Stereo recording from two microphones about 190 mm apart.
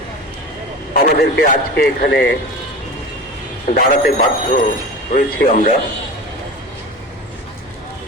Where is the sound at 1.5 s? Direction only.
50° left (ahead or behind).